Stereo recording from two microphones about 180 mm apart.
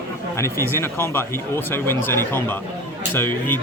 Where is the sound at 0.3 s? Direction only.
15° left (ahead or behind).